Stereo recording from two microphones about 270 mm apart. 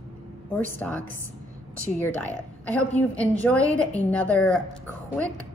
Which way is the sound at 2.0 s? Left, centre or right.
Centre.